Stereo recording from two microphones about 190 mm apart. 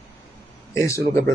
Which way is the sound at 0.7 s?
15° left (ahead or behind).